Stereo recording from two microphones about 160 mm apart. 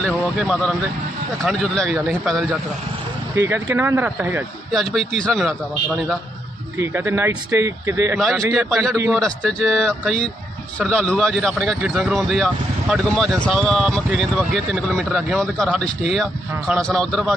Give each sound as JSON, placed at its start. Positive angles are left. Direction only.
{"t": 0.0, "sound": "a man's voice", "side_deg": 0}
{"t": 3.3, "sound": "speech", "side_deg": -20}
{"t": 4.7, "sound": "a man's voice", "side_deg": 0}
{"t": 6.7, "sound": "speech", "side_deg": -15}
{"t": 8.5, "sound": "a man's voice", "side_deg": 0}